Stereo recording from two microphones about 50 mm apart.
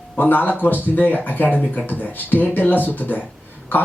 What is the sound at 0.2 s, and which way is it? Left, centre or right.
Speech, left.